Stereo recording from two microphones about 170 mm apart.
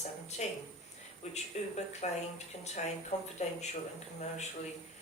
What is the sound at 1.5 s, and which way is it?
Speech, 40° left (ahead or behind).